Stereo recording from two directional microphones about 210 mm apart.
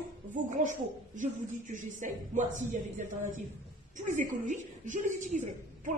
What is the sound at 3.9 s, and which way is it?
A woman's voice, 35° right (ahead or behind).